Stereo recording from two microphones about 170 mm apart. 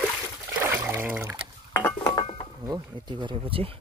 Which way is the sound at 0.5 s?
15° right (ahead or behind).